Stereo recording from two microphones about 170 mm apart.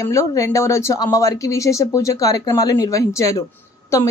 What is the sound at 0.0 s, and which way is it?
Speech, 20° left (ahead or behind).